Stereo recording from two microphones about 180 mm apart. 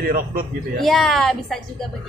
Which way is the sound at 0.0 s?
55° right (ahead or behind).